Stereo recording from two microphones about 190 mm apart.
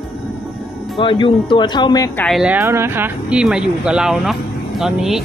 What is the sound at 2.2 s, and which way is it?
Speech, centre (ahead or behind).